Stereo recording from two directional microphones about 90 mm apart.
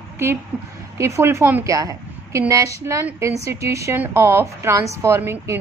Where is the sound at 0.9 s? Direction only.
30° right (ahead or behind).